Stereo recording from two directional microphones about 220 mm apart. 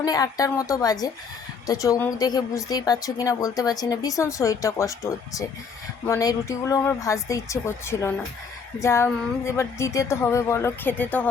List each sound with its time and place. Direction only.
0.0 s a woman's voice: 15° left (ahead or behind)